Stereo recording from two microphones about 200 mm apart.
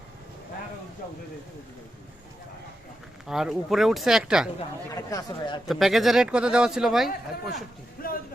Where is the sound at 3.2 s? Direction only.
Centre (ahead or behind).